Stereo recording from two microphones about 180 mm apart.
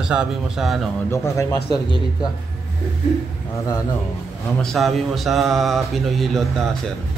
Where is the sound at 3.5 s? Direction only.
15° left (ahead or behind).